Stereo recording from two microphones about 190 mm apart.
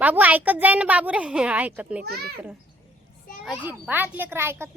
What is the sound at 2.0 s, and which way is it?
Speech, 55° right (ahead or behind).